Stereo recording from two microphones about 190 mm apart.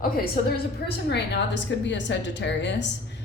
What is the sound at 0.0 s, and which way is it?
A woman's voice, 55° left (ahead or behind).